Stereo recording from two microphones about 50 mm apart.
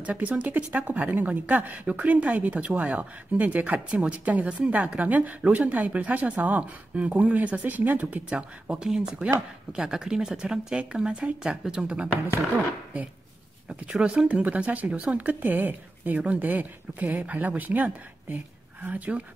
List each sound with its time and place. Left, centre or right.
0.0 s a woman's voice: right
8.3 s speech: centre
15.1 s a woman's voice: right